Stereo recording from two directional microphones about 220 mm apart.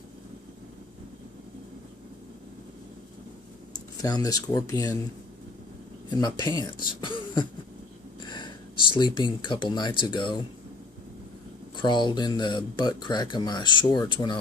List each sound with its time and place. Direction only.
4.0 s speech: 15° left (ahead or behind)
6.2 s speech: 20° left (ahead or behind)
8.9 s speech: 20° left (ahead or behind)
11.7 s speech: 20° left (ahead or behind)